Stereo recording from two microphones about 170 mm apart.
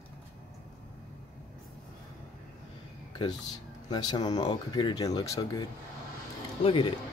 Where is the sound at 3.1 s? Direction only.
25° left (ahead or behind).